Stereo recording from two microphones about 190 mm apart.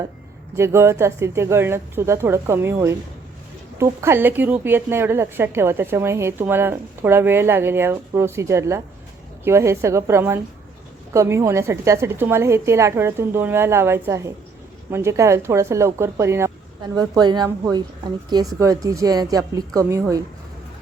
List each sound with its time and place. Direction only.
0.5 s a woman's voice: 15° right (ahead or behind)